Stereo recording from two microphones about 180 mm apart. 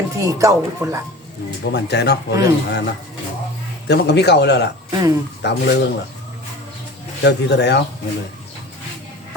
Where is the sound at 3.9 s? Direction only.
70° left (ahead or behind).